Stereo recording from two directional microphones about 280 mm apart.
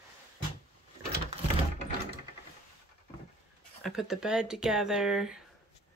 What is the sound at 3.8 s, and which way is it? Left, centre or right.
Speech, centre.